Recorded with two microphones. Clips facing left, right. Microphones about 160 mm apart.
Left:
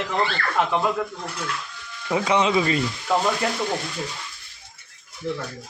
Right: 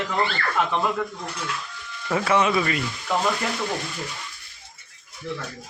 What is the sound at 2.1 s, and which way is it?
Speech, 15° left (ahead or behind).